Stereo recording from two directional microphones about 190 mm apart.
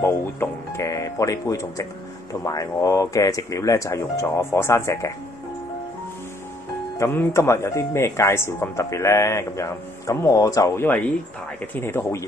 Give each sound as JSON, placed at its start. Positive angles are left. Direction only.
{"t": 0.0, "sound": "speech", "side_deg": 15}
{"t": 7.0, "sound": "speech", "side_deg": 15}